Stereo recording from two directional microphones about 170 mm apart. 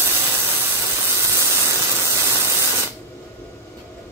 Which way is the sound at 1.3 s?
15° right (ahead or behind).